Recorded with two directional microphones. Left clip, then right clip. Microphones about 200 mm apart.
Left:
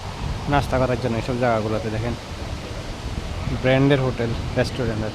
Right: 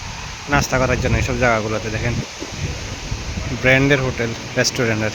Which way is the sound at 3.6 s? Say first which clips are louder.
Right 4 dB; 5° left (ahead or behind).